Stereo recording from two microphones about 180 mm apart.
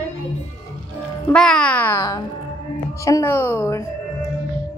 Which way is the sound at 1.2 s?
5° left (ahead or behind).